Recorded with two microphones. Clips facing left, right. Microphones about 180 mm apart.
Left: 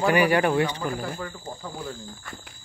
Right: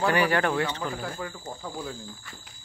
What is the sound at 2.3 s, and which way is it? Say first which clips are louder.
Speech: left 6 dB; 50° left (ahead or behind).